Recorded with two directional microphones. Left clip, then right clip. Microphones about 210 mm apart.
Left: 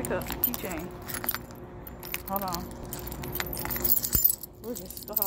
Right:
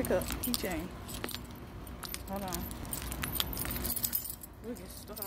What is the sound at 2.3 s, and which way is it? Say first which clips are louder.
Speech: left 8 dB; centre (ahead or behind).